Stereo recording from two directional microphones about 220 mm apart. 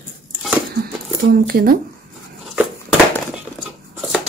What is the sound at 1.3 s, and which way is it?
Speech, 40° right (ahead or behind).